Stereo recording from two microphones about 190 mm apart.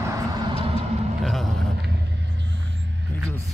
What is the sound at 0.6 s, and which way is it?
Music, 30° right (ahead or behind).